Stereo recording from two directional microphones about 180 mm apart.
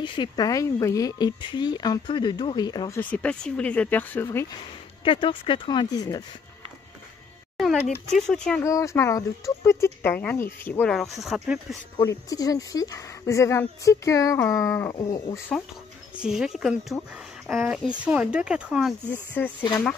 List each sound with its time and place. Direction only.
0.0 s speech: 25° left (ahead or behind)
3.0 s speech: 10° left (ahead or behind)
5.0 s speech: 30° left (ahead or behind)
8.1 s speech: 5° left (ahead or behind)
8.6 s speech: 15° left (ahead or behind); by 11.6 s 5° right (ahead or behind)
12.0 s speech: 20° left (ahead or behind)
16.2 s speech: 5° right (ahead or behind)
19.4 s speech: 10° left (ahead or behind)